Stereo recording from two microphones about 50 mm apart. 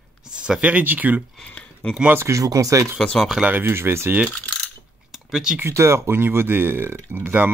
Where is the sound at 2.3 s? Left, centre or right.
Right.